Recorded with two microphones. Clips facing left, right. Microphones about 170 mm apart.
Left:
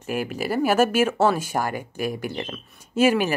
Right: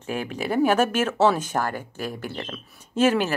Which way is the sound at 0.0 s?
10° left (ahead or behind).